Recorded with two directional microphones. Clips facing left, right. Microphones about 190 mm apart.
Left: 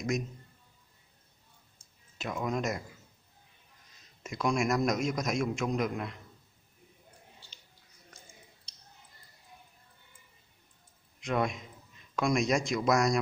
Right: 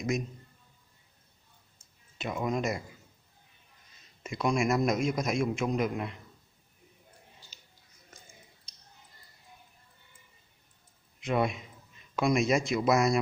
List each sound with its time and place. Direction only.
2.1 s a man's voice: 5° right (ahead or behind)
4.2 s a man's voice: centre (ahead or behind)
11.1 s a man's voice: 5° right (ahead or behind)